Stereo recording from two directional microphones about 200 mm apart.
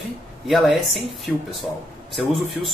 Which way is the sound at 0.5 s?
Centre (ahead or behind).